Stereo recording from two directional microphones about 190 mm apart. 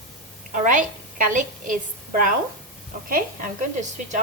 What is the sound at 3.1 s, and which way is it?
Speech, 45° right (ahead or behind).